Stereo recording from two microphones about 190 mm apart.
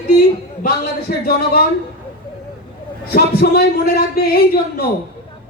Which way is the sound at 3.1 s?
55° left (ahead or behind).